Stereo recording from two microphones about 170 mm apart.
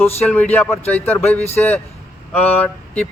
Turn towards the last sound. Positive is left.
turn(degrees=10)  # may be behind; listen again after turning